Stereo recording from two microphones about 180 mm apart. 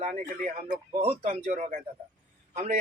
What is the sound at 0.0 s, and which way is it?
Speech, 40° right (ahead or behind).